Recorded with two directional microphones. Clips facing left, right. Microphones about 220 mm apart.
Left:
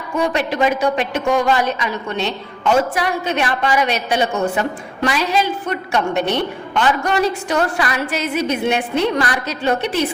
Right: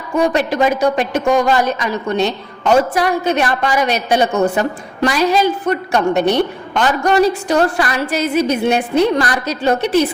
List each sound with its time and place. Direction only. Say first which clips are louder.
0.2 s a woman's voice: right 3 dB; 40° right (ahead or behind)